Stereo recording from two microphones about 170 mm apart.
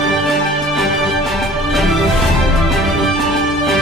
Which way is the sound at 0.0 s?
Centre (ahead or behind).